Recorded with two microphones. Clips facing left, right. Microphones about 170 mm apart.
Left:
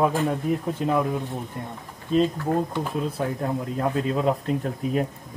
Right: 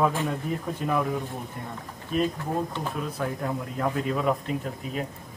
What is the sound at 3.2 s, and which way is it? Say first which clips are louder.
Speech: left 3 dB; 30° left (ahead or behind).